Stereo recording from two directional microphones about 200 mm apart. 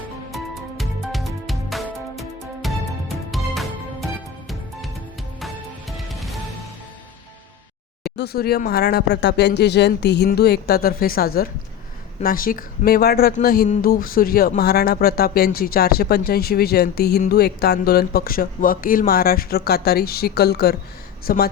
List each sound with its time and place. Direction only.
0.3 s music: centre (ahead or behind)
6.1 s music: centre (ahead or behind)
8.0 s speech: 55° left (ahead or behind)